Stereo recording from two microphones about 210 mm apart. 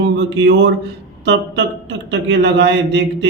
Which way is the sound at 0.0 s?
55° right (ahead or behind).